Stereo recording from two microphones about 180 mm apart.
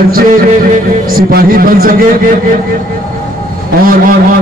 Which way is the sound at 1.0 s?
55° right (ahead or behind).